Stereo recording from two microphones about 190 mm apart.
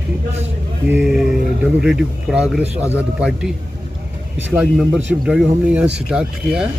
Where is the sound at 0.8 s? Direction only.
5° right (ahead or behind).